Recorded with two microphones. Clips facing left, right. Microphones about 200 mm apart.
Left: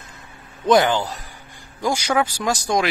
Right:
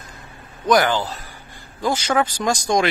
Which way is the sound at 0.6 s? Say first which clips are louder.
Left 1 dB; 20° left (ahead or behind).